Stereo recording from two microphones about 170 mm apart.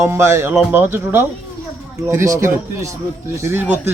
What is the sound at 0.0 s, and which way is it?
A man's voice, 15° right (ahead or behind).